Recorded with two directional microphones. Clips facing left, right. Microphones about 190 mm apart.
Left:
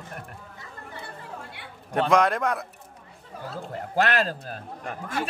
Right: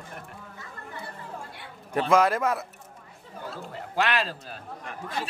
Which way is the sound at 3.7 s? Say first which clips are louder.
Left 3 dB; 45° left (ahead or behind).